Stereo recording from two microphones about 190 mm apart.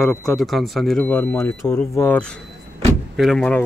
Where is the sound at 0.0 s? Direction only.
Centre (ahead or behind).